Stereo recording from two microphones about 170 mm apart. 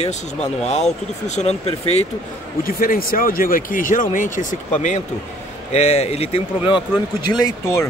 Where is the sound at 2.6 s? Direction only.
55° left (ahead or behind); by 6.8 s 35° left (ahead or behind).